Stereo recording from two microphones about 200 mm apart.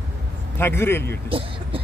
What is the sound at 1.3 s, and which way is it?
Vehicle, 25° right (ahead or behind).